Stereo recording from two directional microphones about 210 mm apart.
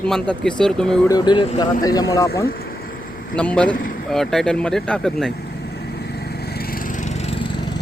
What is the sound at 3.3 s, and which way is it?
Speech, 5° left (ahead or behind).